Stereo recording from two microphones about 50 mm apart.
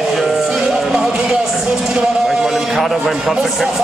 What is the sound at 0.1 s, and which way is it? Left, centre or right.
Music, centre.